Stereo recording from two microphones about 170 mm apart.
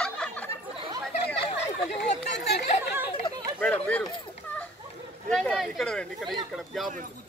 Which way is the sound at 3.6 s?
5° left (ahead or behind).